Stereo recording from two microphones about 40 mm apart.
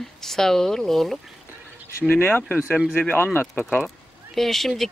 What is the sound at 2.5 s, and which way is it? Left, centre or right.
Speech, right.